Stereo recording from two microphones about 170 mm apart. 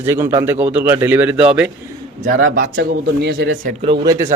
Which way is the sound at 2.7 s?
75° right (ahead or behind).